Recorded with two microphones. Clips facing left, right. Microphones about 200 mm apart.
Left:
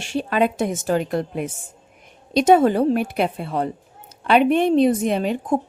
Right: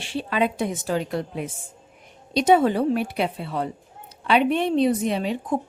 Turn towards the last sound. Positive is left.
turn(degrees=50)  # may be behind; listen again after turning